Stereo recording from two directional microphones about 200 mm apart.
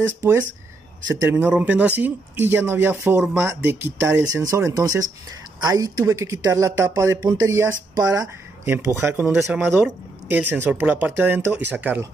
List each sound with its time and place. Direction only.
1.2 s speech: 10° right (ahead or behind)